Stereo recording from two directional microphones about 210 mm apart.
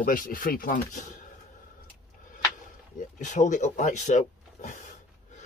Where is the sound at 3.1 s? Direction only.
35° left (ahead or behind).